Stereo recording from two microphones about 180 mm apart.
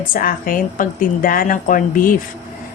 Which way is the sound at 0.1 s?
50° left (ahead or behind).